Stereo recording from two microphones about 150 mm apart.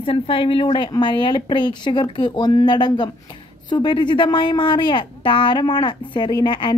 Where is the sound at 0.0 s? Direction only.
35° left (ahead or behind).